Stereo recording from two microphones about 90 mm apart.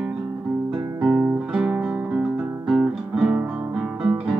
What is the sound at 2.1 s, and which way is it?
Guitar, 10° right (ahead or behind).